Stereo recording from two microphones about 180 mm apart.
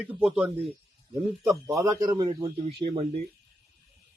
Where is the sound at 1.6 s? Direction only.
15° right (ahead or behind); by 3.2 s 40° right (ahead or behind).